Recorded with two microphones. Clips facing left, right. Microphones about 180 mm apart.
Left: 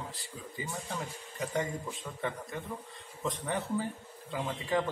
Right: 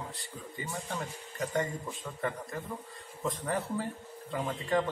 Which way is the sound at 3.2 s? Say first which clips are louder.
Right 1 dB; centre (ahead or behind).